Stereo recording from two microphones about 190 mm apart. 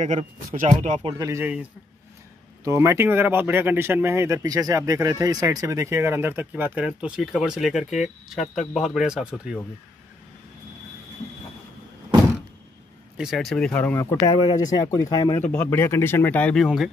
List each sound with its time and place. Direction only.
0.0 s speech: 40° right (ahead or behind)
1.1 s speech: 15° right (ahead or behind)
2.8 s speech: 15° right (ahead or behind)
13.2 s speech: centre (ahead or behind)
14.2 s speech: 25° left (ahead or behind)
15.5 s speech: 10° left (ahead or behind)